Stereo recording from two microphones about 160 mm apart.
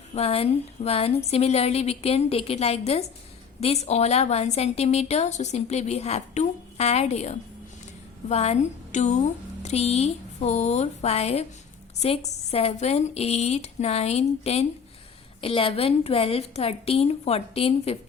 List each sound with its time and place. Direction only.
0.1 s a woman's voice: 40° left (ahead or behind)